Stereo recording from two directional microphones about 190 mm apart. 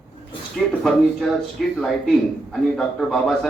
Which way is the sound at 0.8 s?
Centre (ahead or behind).